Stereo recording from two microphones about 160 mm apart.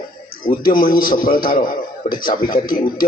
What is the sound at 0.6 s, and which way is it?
A man's voice, 60° left (ahead or behind).